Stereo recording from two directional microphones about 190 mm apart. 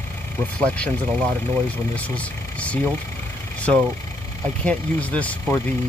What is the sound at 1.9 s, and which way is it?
Speech, 5° left (ahead or behind).